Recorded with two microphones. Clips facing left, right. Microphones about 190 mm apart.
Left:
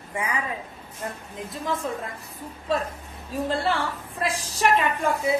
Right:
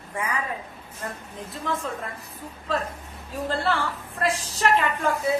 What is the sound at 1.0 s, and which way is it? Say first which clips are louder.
Speech: left 1 dB; 15° left (ahead or behind).